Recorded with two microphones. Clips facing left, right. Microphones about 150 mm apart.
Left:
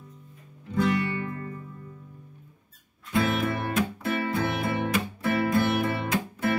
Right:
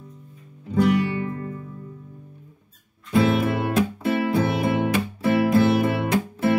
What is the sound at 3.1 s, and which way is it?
Music, 30° right (ahead or behind).